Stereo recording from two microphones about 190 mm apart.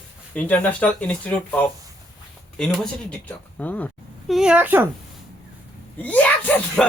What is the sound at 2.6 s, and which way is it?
Speech, centre (ahead or behind).